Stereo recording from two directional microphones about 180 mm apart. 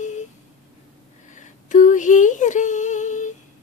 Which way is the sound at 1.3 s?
45° left (ahead or behind).